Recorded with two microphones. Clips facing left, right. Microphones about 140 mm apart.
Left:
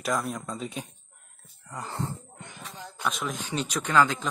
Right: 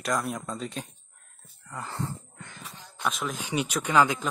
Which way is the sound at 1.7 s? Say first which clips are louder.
Left 1 dB; 15° left (ahead or behind).